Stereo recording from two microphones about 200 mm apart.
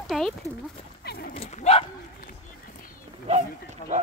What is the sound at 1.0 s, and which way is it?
Dog, 50° left (ahead or behind).